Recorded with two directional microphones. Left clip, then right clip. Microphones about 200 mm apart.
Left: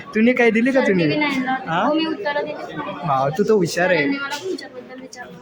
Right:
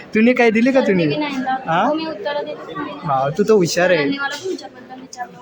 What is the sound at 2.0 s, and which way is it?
A man's voice, 5° left (ahead or behind).